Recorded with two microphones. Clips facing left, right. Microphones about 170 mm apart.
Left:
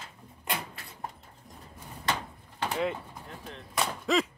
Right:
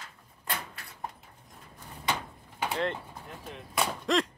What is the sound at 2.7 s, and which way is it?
Vehicle, 5° left (ahead or behind).